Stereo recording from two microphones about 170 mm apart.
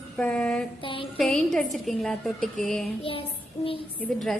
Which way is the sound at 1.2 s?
5° left (ahead or behind).